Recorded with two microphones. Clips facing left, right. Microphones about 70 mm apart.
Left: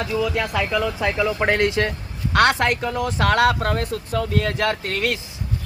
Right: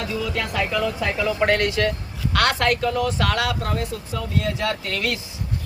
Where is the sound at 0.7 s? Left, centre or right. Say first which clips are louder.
Left 1 dB; centre.